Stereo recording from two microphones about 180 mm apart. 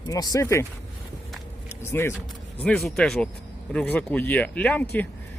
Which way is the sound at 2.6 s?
5° left (ahead or behind).